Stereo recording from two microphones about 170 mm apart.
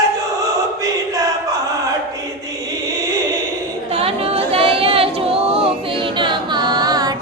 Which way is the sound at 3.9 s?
35° right (ahead or behind).